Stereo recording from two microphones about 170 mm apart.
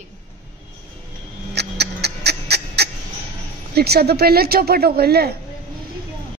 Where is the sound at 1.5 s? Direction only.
75° right (ahead or behind).